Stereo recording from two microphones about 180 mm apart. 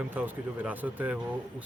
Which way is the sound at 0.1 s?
10° right (ahead or behind).